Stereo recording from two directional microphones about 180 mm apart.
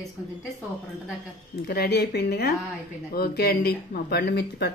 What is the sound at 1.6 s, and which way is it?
A woman's voice, 65° left (ahead or behind).